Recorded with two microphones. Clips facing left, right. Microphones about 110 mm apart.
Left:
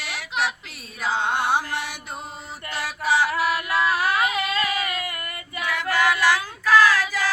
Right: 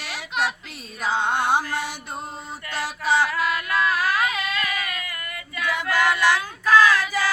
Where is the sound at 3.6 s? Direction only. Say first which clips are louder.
Left 1 dB; 25° left (ahead or behind).